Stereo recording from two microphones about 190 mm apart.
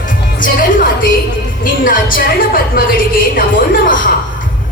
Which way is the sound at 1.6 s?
45° left (ahead or behind).